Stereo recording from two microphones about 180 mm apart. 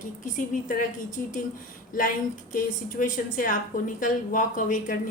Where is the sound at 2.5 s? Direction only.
50° left (ahead or behind).